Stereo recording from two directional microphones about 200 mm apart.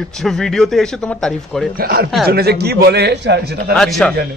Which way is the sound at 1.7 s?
50° right (ahead or behind).